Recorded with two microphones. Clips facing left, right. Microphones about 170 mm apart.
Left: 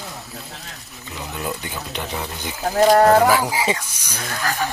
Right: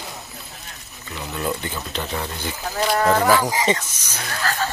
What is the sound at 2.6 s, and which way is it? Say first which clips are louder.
Speech: left 7 dB; 45° left (ahead or behind).